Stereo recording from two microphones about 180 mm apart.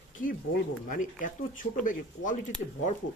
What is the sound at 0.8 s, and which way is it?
Speech, 45° left (ahead or behind).